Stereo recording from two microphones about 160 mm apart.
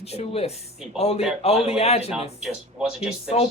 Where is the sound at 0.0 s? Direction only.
40° left (ahead or behind).